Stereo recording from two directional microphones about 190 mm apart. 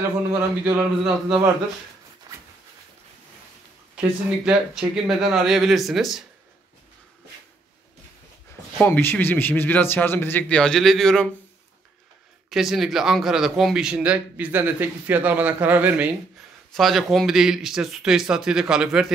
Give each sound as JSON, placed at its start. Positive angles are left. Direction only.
{"t": 0.3, "sound": "a man's voice", "side_deg": -10}
{"t": 2.3, "sound": "a sound", "side_deg": -20}
{"t": 4.5, "sound": "speech", "side_deg": -5}
{"t": 8.7, "sound": "speech", "side_deg": 10}
{"t": 12.4, "sound": "a man's voice", "side_deg": 0}